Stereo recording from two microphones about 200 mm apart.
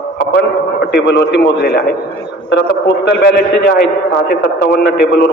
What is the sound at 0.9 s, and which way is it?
A man's voice, 60° left (ahead or behind).